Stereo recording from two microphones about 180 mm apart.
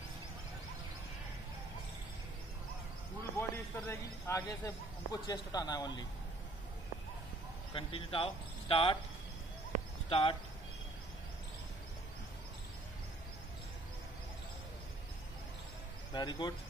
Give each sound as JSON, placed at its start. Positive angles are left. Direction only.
{"t": 3.3, "sound": "a man's voice", "side_deg": 10}
{"t": 7.7, "sound": "speech", "side_deg": 30}
{"t": 10.0, "sound": "speech", "side_deg": 30}
{"t": 16.1, "sound": "a man's voice", "side_deg": 25}